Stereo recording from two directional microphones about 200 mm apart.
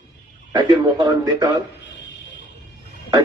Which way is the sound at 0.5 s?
20° right (ahead or behind).